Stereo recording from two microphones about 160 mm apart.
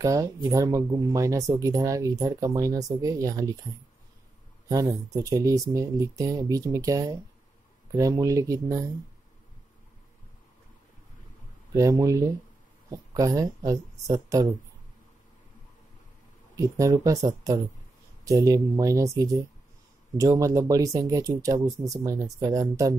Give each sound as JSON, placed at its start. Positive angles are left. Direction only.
{"t": 0.0, "sound": "speech", "side_deg": -20}
{"t": 4.6, "sound": "speech", "side_deg": -20}
{"t": 11.7, "sound": "speech", "side_deg": -20}
{"t": 16.5, "sound": "speech", "side_deg": -20}